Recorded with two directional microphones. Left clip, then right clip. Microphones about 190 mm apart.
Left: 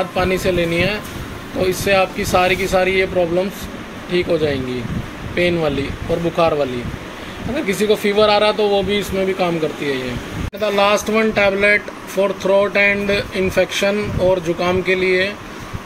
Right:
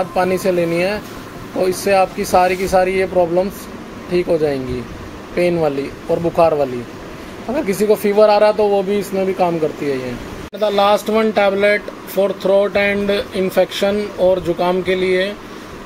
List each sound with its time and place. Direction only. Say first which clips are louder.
0.1 s speech: right 2 dB; 20° right (ahead or behind)